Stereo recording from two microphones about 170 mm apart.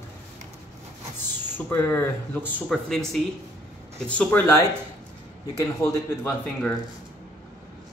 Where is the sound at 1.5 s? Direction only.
10° left (ahead or behind).